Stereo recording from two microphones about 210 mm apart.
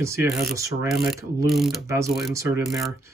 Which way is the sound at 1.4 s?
Centre (ahead or behind).